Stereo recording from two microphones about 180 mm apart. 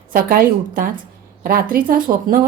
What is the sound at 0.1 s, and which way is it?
Speech, 55° right (ahead or behind).